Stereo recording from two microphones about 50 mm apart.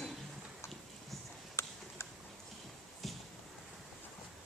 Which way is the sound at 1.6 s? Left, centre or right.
Left.